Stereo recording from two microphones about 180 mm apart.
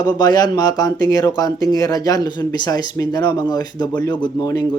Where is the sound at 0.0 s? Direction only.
25° left (ahead or behind).